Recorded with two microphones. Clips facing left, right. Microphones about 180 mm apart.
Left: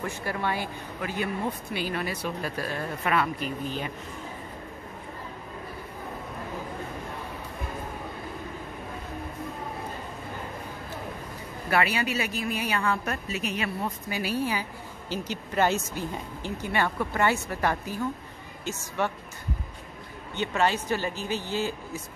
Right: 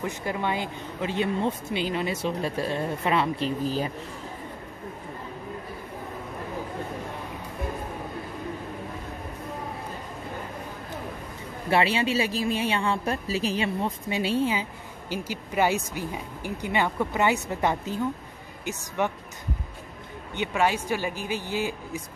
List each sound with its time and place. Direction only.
0.0 s speech: 20° right (ahead or behind); by 3.9 s 35° right (ahead or behind)
11.7 s speech: 25° right (ahead or behind)
15.0 s speech: 10° right (ahead or behind)
20.3 s speech: 10° right (ahead or behind)